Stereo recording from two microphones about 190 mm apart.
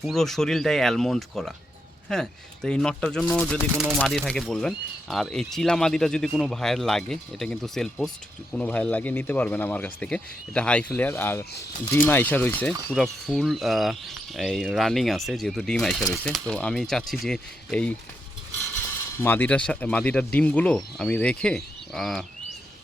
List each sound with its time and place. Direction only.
0.0 s speech: centre (ahead or behind)
19.1 s speech: 10° left (ahead or behind)